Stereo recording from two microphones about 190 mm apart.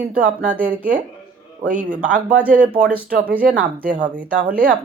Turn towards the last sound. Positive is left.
turn(degrees=-10)  # may be behind; listen again after turning